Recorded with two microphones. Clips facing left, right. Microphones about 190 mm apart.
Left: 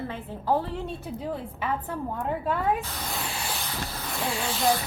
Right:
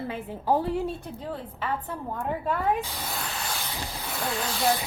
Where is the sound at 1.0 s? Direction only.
10° left (ahead or behind).